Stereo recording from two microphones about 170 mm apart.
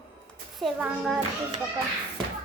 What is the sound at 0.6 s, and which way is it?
Child singing, centre (ahead or behind).